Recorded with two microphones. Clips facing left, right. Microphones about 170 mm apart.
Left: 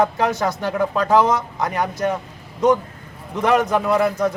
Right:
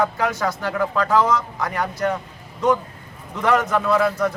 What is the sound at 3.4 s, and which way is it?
Speech, 15° left (ahead or behind).